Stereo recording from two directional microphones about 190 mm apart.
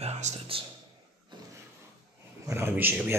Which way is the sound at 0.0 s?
35° right (ahead or behind).